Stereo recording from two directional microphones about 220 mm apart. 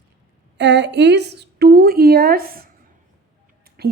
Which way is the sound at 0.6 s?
55° right (ahead or behind).